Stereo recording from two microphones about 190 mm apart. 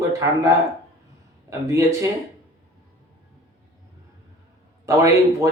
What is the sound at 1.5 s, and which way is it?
Speech, 15° right (ahead or behind).